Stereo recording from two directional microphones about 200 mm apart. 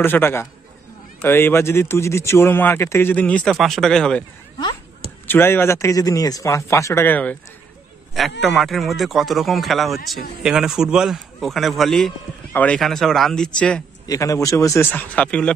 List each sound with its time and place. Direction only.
0.0 s speech: 10° left (ahead or behind)
5.2 s speech: 10° left (ahead or behind)
8.4 s speech: centre (ahead or behind)
14.0 s speech: 15° left (ahead or behind)